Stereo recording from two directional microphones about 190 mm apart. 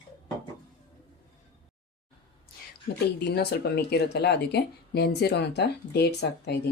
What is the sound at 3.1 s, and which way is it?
Speech, 60° left (ahead or behind).